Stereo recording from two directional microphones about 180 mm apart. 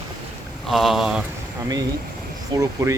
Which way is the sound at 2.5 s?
20° right (ahead or behind).